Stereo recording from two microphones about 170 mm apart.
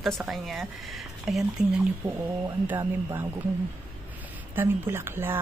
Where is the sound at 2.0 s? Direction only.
25° right (ahead or behind).